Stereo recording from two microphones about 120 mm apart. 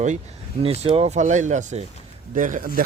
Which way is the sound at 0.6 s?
55° right (ahead or behind).